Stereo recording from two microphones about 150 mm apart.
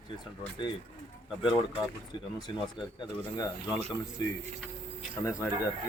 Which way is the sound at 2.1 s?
30° left (ahead or behind).